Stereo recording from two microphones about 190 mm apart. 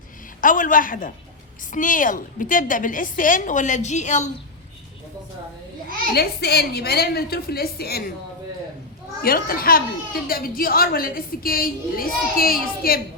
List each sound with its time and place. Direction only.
0.4 s a woman's voice: 45° left (ahead or behind)
6.1 s a woman's voice: 60° left (ahead or behind)
9.2 s a woman's voice: 50° left (ahead or behind)